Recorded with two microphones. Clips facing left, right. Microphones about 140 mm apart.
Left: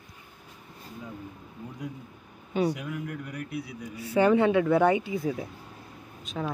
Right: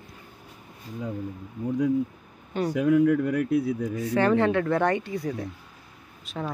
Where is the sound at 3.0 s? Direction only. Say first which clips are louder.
Right 15 dB; 90° right.